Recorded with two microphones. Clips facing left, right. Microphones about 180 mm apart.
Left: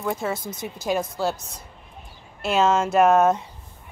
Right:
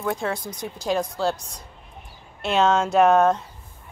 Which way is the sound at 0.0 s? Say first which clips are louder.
Even; centre (ahead or behind).